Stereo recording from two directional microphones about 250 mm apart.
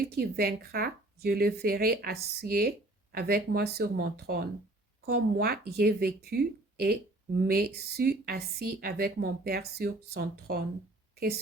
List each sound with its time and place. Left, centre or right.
0.0 s speech: right